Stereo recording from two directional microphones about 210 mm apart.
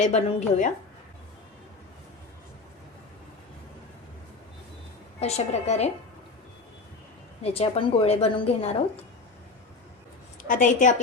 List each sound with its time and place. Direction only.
0.0 s a woman's voice: 35° left (ahead or behind)
5.2 s a woman's voice: 30° left (ahead or behind)
7.4 s a woman's voice: 30° left (ahead or behind)
10.4 s a woman's voice: 40° left (ahead or behind)